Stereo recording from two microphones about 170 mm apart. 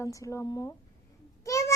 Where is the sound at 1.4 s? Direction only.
20° left (ahead or behind).